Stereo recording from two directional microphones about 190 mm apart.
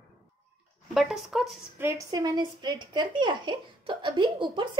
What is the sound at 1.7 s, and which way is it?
Speech, 15° right (ahead or behind).